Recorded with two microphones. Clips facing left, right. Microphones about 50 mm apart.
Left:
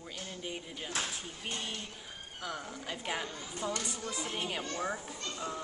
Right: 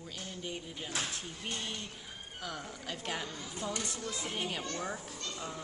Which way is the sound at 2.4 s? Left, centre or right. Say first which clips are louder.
Left 2 dB; centre.